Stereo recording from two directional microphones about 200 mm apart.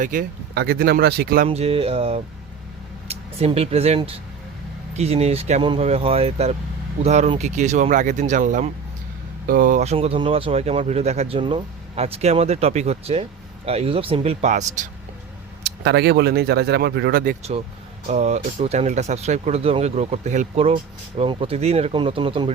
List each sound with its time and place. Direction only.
0.0 s speech: 40° right (ahead or behind)
1.5 s a sound: 30° right (ahead or behind)
3.1 s speech: 30° right (ahead or behind)
15.6 s speech: 55° right (ahead or behind)
18.1 s speech: 35° right (ahead or behind)